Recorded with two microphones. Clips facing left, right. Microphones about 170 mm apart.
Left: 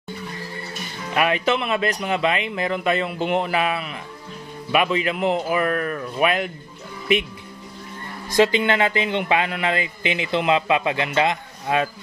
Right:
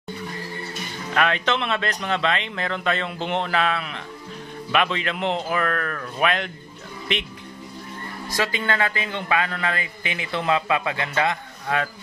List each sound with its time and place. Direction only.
1.1 s speech: 10° left (ahead or behind)
8.4 s a man's voice: 25° left (ahead or behind)